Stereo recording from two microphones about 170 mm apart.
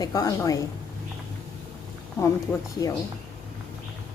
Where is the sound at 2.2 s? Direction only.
15° left (ahead or behind).